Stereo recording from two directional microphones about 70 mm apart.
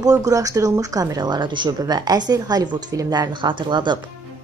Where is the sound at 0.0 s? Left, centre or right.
Right.